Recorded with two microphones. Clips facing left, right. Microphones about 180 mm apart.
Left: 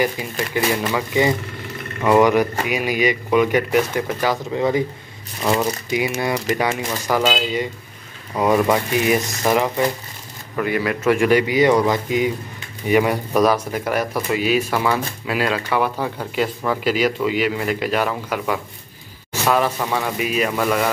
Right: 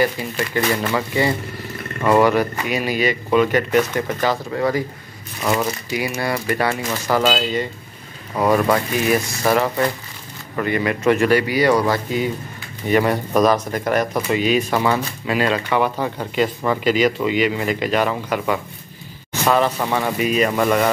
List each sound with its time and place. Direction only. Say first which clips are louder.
0.0 s speech: right 1 dB; 10° left (ahead or behind)
5.9 s speech: left 2 dB; 20° left (ahead or behind); by 11.1 s 5° left (ahead or behind)
11.1 s speech: left 1 dB; 15° left (ahead or behind)
19.8 s speech: right 2 dB; 5° right (ahead or behind)
20.2 s speech: right 5 dB; 5° left (ahead or behind)